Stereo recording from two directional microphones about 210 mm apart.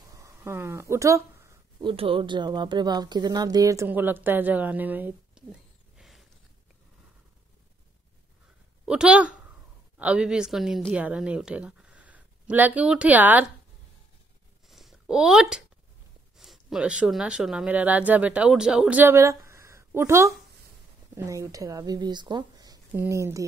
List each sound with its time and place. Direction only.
0.1 s speech: 15° right (ahead or behind)
8.8 s a woman's voice: 5° right (ahead or behind)
14.7 s a sound: centre (ahead or behind)
16.3 s a woman's voice: centre (ahead or behind)